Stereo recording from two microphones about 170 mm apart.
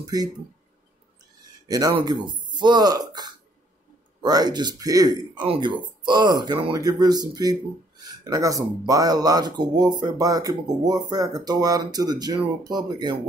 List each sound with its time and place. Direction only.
0.0 s speech: 25° right (ahead or behind)
1.7 s speech: 20° right (ahead or behind)